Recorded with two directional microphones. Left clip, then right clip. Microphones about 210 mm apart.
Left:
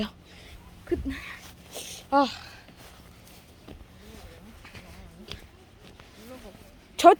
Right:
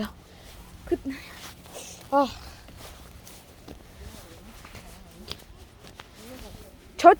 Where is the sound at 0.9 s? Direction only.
10° right (ahead or behind).